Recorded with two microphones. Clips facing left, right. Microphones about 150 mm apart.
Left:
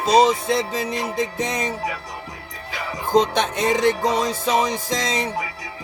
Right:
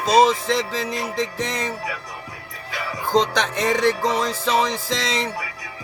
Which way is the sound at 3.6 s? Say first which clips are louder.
Even; 25° left (ahead or behind).